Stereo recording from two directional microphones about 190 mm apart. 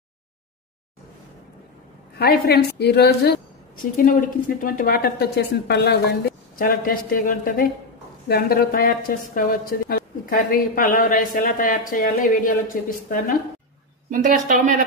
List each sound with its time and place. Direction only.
2.1 s a woman's voice: 55° left (ahead or behind)
14.1 s a woman's voice: 45° right (ahead or behind)